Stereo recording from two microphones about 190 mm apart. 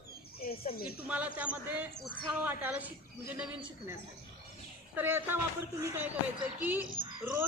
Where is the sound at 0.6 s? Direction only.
55° left (ahead or behind).